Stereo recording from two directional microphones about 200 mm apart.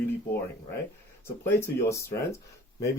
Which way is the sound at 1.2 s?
15° left (ahead or behind).